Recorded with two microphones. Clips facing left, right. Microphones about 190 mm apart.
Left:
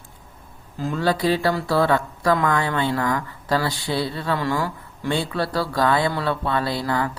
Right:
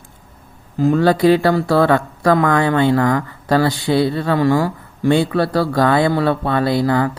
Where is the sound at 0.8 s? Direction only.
55° right (ahead or behind).